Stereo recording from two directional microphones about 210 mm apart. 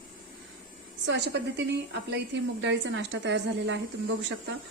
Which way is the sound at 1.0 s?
55° right (ahead or behind).